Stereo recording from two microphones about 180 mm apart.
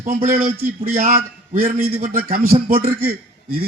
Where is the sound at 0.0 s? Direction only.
50° right (ahead or behind).